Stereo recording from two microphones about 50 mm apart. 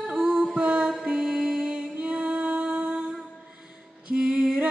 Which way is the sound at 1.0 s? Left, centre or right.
Centre.